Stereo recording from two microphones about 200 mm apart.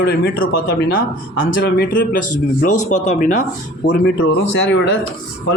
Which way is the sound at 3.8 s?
60° left (ahead or behind).